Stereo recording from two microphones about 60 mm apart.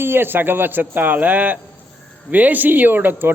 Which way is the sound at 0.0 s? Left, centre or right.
Right.